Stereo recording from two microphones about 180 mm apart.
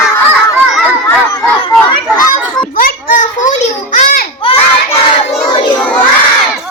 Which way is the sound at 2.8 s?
50° left (ahead or behind).